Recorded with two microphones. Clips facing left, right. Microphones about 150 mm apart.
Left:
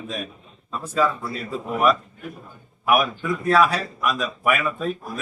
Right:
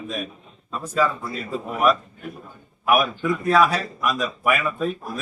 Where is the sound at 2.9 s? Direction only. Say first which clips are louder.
Right 1 dB; centre (ahead or behind).